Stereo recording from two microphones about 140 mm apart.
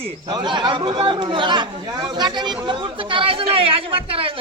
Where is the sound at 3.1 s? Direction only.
40° right (ahead or behind).